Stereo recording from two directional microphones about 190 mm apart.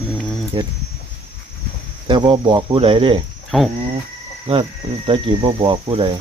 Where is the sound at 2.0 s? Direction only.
25° right (ahead or behind).